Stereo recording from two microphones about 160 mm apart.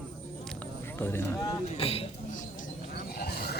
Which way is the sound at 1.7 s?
35° left (ahead or behind).